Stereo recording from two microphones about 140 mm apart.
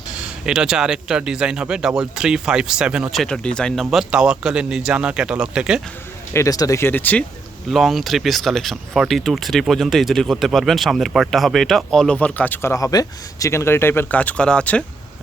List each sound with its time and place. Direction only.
0.2 s speech: 5° right (ahead or behind)
3.9 s speech: 5° right (ahead or behind)
6.3 s speech: 25° left (ahead or behind)
7.7 s speech: centre (ahead or behind)